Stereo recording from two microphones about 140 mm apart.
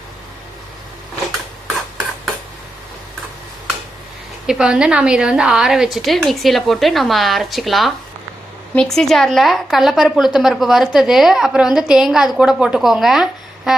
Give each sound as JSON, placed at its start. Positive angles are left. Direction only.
{"t": 4.4, "sound": "a woman's voice", "side_deg": -5}